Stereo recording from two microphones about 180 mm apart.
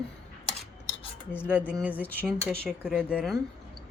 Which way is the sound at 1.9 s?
10° left (ahead or behind).